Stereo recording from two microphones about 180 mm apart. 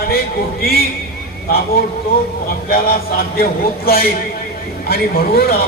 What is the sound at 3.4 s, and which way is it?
A man's voice, 55° left (ahead or behind).